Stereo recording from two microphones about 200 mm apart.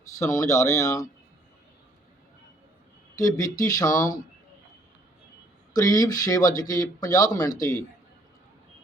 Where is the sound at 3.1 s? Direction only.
15° left (ahead or behind).